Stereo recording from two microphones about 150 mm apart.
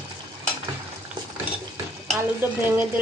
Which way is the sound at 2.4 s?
15° right (ahead or behind).